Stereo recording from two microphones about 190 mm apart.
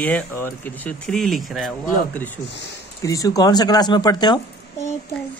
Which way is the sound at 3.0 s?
15° left (ahead or behind).